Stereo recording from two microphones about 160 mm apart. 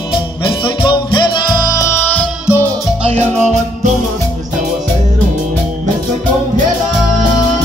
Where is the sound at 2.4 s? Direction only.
10° right (ahead or behind).